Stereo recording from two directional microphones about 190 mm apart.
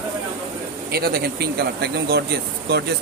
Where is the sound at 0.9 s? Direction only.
55° right (ahead or behind).